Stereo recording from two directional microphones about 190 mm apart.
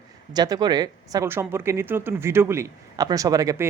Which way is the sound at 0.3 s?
20° right (ahead or behind).